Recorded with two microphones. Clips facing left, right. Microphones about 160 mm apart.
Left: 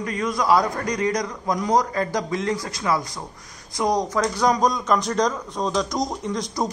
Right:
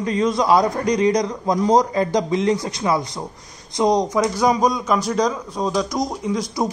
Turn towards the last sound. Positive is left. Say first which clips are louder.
# right 3 dB
turn(degrees=-5)  # may be behind; listen again after turning